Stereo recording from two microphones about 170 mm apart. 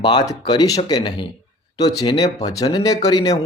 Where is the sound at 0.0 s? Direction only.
25° left (ahead or behind).